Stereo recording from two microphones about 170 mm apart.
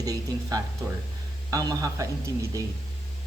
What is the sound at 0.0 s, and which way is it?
A man's voice, 20° right (ahead or behind).